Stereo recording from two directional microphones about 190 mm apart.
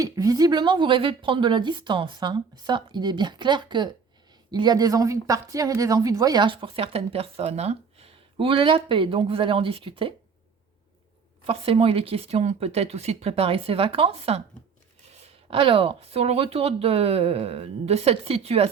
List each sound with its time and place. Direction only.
0.0 s speech: 20° right (ahead or behind)
11.4 s speech: 30° right (ahead or behind)